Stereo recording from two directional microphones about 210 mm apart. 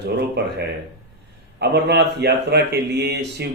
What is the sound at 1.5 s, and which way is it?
Speech, 55° right (ahead or behind).